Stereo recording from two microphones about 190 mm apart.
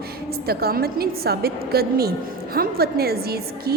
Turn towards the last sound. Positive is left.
turn(degrees=-55)  # may be behind; listen again after turning